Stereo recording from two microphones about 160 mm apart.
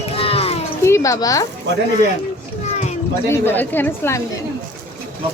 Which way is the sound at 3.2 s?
15° left (ahead or behind).